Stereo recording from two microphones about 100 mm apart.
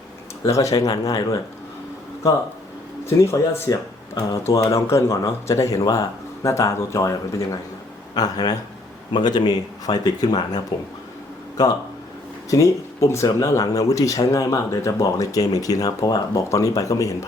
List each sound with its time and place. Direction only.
0.4 s speech: 35° left (ahead or behind)
3.2 s speech: 25° left (ahead or behind)
12.5 s speech: 35° left (ahead or behind)